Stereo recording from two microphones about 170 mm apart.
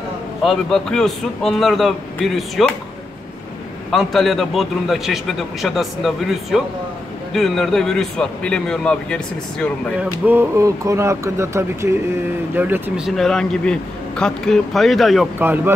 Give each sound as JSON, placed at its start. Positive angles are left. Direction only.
{"t": 0.4, "sound": "a man's voice", "side_deg": 0}
{"t": 3.9, "sound": "a man's voice", "side_deg": 0}
{"t": 9.9, "sound": "a man's voice", "side_deg": -10}
{"t": 15.3, "sound": "speech", "side_deg": -10}